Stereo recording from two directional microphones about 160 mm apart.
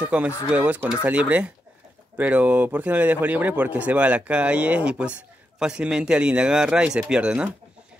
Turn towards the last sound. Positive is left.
turn(degrees=-5)  # may be behind; listen again after turning